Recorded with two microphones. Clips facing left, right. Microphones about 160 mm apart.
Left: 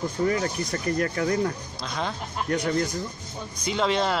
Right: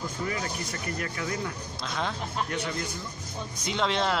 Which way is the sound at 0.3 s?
40° left (ahead or behind).